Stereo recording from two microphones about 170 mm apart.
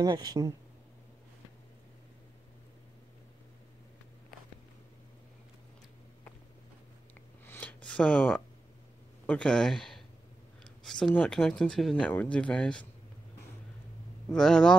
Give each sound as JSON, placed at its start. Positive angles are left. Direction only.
{"t": 0.0, "sound": "speech", "side_deg": -25}
{"t": 7.4, "sound": "a sound", "side_deg": 10}
{"t": 9.2, "sound": "speech", "side_deg": 5}
{"t": 14.3, "sound": "speech", "side_deg": 5}